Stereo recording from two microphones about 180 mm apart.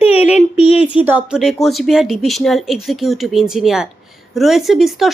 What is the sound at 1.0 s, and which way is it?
Speech, 5° right (ahead or behind).